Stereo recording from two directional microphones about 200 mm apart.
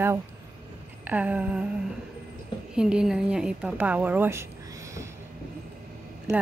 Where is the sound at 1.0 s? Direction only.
5° right (ahead or behind).